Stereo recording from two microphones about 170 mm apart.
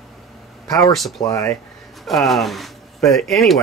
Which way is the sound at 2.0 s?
Centre (ahead or behind).